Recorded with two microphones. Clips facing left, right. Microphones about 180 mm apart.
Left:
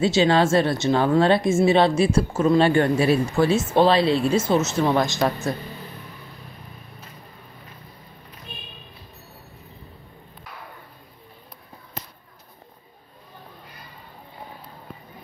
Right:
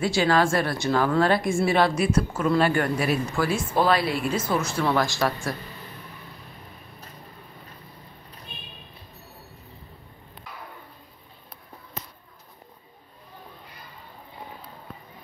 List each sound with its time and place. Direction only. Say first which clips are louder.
0.0 s a woman's voice: left 3 dB; 25° left (ahead or behind)